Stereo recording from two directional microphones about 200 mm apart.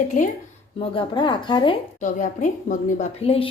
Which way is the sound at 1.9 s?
40° left (ahead or behind).